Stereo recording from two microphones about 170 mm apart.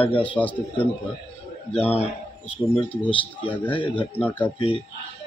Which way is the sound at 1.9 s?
35° left (ahead or behind).